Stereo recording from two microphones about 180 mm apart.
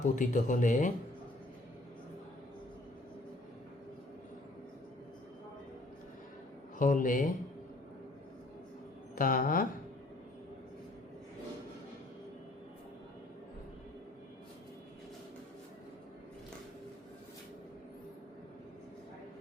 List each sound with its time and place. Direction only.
0.0 s speech: 45° left (ahead or behind)
6.7 s speech: 45° left (ahead or behind)
9.1 s speech: 50° left (ahead or behind)